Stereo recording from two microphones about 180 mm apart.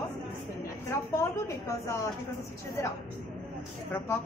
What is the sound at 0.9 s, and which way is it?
A woman's voice, 15° left (ahead or behind).